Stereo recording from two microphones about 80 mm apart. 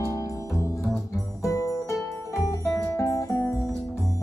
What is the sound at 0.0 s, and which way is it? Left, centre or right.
Music, left.